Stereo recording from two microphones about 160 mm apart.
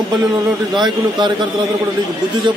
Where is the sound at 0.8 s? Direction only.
30° right (ahead or behind).